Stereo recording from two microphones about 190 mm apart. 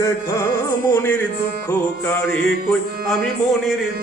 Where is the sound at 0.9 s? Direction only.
10° left (ahead or behind).